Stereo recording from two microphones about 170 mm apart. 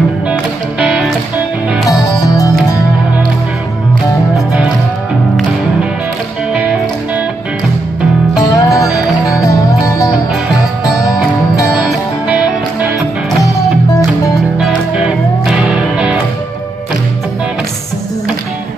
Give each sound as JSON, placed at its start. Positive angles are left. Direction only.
{"t": 0.3, "sound": "music", "side_deg": -5}
{"t": 1.9, "sound": "music", "side_deg": 20}
{"t": 8.4, "sound": "music", "side_deg": 20}
{"t": 14.6, "sound": "music", "side_deg": -5}